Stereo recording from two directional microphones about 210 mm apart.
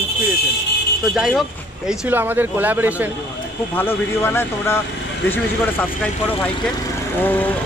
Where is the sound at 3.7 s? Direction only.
10° left (ahead or behind).